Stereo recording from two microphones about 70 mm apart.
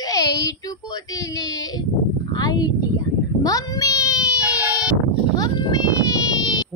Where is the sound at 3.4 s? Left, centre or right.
Left.